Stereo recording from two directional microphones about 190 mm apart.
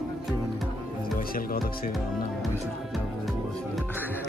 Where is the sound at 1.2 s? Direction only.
50° left (ahead or behind).